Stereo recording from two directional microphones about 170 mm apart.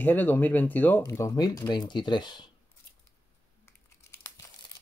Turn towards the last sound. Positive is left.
turn(degrees=15)  # may be behind; listen again after turning